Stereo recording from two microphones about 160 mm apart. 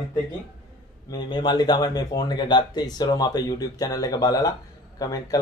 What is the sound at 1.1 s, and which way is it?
Speech, 25° left (ahead or behind).